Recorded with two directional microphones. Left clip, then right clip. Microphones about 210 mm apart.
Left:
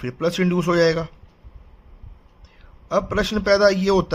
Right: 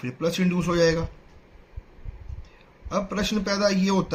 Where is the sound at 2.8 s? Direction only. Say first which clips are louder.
Left 6 dB; 45° left (ahead or behind).